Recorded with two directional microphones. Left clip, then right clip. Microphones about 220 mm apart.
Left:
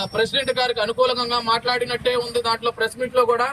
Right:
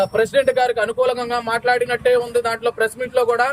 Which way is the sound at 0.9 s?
30° right (ahead or behind).